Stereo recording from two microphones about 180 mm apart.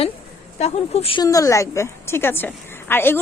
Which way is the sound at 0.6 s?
35° left (ahead or behind).